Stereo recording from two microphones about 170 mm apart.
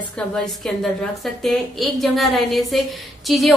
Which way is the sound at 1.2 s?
Centre (ahead or behind).